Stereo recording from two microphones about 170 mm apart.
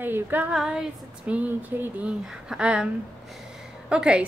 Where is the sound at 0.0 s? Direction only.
10° right (ahead or behind).